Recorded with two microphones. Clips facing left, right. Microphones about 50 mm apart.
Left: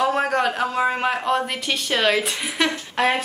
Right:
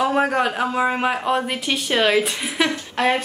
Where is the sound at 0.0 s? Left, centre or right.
Centre.